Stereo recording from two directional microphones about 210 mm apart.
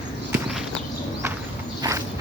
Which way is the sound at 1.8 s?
20° right (ahead or behind).